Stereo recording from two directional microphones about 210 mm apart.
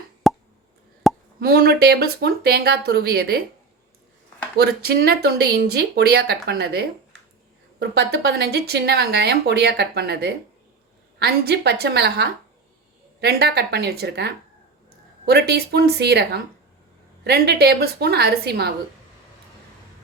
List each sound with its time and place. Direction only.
0.2 s plop: centre (ahead or behind)
1.4 s speech: 45° right (ahead or behind)
4.5 s speech: 50° right (ahead or behind)